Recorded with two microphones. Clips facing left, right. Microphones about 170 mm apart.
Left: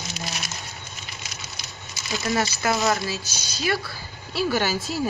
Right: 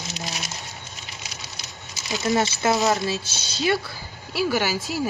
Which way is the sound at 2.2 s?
20° right (ahead or behind).